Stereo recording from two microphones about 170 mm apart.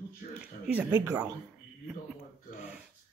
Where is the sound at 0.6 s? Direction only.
10° right (ahead or behind).